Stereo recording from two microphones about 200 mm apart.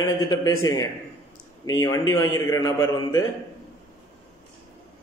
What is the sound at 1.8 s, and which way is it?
A man's voice, 15° left (ahead or behind).